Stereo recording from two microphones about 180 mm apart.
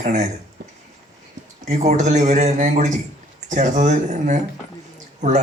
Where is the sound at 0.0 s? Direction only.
40° right (ahead or behind).